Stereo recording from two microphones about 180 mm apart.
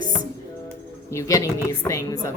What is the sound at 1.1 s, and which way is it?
Speech, 20° left (ahead or behind).